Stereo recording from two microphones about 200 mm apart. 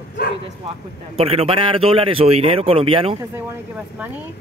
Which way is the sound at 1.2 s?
30° right (ahead or behind).